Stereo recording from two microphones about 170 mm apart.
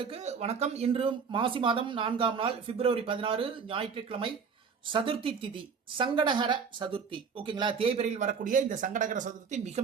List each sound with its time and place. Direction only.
0.0 s speech: 40° right (ahead or behind)